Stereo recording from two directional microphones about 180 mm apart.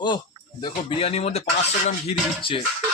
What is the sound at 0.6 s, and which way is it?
Speech, 30° left (ahead or behind).